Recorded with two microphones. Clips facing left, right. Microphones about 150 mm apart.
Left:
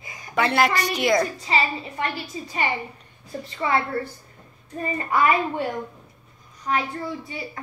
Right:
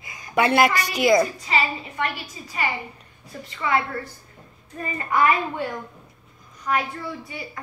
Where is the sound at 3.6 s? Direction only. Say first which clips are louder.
Even; 30° left (ahead or behind).